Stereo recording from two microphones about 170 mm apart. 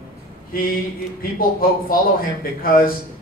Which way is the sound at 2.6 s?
55° left (ahead or behind).